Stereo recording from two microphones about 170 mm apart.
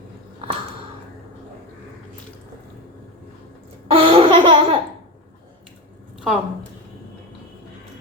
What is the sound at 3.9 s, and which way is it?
Laughter, 30° right (ahead or behind).